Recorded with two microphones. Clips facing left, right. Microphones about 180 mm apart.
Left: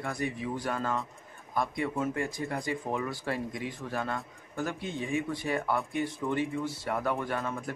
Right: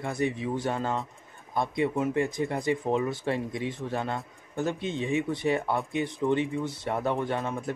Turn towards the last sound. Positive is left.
turn(degrees=-20)  # may be behind; listen again after turning